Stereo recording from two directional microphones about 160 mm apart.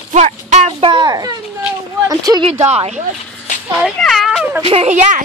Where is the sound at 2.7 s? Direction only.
40° right (ahead or behind).